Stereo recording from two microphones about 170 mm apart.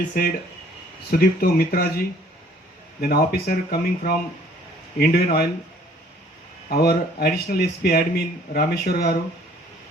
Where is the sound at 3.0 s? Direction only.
65° left (ahead or behind).